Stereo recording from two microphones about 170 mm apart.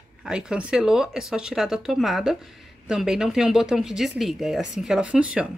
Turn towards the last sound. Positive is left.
turn(degrees=-5)  # may be behind; listen again after turning